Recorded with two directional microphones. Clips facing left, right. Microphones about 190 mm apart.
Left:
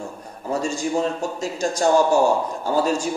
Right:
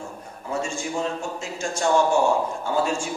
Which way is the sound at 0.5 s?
40° left (ahead or behind).